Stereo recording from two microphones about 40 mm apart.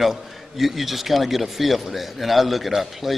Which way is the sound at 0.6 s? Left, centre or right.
Centre.